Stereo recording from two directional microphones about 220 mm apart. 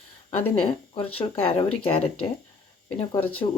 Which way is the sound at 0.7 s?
25° left (ahead or behind).